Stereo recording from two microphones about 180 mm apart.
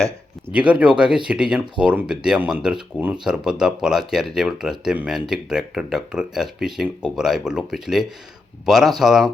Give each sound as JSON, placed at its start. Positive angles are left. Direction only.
{"t": 0.7, "sound": "speech", "side_deg": -5}